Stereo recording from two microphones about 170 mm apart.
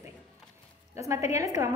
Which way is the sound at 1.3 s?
20° right (ahead or behind).